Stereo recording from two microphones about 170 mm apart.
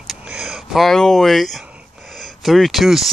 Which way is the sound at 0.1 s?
5° right (ahead or behind).